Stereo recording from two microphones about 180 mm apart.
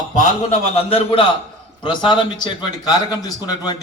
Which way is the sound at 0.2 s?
40° left (ahead or behind).